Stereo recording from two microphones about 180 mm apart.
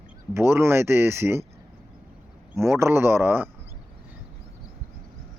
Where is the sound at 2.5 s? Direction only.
15° right (ahead or behind).